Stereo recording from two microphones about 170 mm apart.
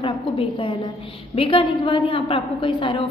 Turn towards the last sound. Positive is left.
turn(degrees=30)  # may be behind; listen again after turning